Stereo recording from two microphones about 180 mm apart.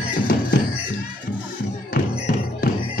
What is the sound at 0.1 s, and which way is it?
Music, 50° left (ahead or behind).